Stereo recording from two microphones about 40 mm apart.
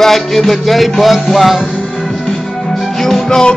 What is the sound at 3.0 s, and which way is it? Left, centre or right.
Music, centre.